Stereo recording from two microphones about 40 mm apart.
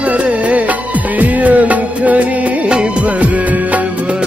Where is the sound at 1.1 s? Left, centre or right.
Right.